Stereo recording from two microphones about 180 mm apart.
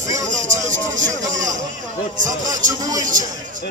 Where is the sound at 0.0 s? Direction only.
40° right (ahead or behind).